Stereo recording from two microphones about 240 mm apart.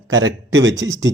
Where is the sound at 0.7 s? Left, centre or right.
Centre.